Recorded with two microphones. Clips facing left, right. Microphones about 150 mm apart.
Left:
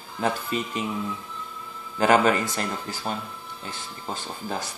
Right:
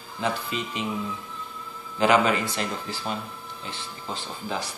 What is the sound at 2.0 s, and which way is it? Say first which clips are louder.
Speech: left 1 dB; 45° left (ahead or behind).